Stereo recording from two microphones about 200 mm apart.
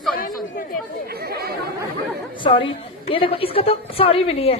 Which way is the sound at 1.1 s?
50° right (ahead or behind).